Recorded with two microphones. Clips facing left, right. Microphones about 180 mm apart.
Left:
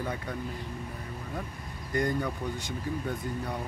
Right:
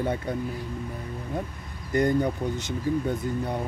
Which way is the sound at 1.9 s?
25° right (ahead or behind).